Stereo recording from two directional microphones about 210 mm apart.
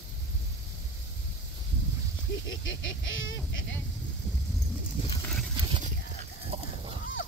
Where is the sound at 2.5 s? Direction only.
65° left (ahead or behind).